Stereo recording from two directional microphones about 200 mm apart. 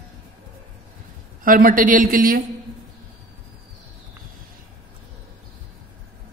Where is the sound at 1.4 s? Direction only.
45° right (ahead or behind).